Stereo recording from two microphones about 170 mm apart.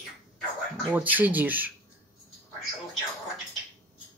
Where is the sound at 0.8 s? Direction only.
10° right (ahead or behind).